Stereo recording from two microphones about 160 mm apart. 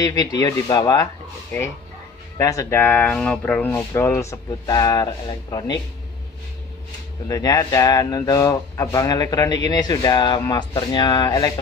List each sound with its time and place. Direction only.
0.0 s speech: 25° left (ahead or behind)
1.5 s speech: 15° left (ahead or behind)
7.2 s speech: 20° left (ahead or behind)